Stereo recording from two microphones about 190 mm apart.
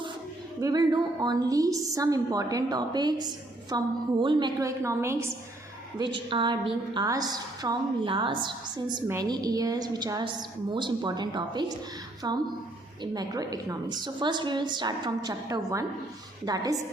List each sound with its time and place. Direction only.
0.6 s a woman's voice: 20° right (ahead or behind)
6.0 s a woman's voice: 25° right (ahead or behind)